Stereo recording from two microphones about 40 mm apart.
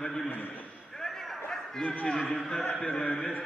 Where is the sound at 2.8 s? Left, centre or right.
Centre.